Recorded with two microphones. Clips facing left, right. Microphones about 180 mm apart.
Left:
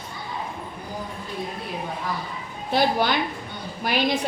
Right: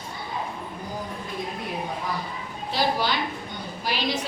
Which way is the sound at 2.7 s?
55° left (ahead or behind).